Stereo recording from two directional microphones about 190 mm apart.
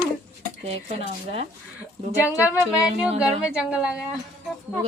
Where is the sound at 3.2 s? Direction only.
5° right (ahead or behind).